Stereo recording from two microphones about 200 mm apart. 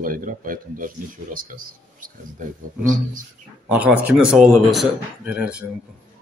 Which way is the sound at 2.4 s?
40° right (ahead or behind).